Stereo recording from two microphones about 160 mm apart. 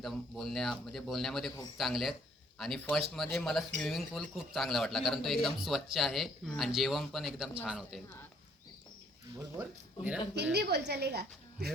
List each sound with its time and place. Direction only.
0.0 s speech: centre (ahead or behind)
9.6 s speech: 10° right (ahead or behind)
10.5 s a woman's voice: 90° right